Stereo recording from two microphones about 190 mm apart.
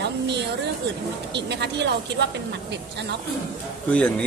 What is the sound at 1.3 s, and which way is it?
Speech, 65° right (ahead or behind).